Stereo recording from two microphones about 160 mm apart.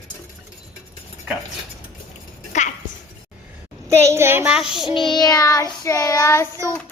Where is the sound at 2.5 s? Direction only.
45° left (ahead or behind).